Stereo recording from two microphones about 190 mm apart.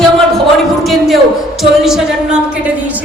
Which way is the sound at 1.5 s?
Centre (ahead or behind).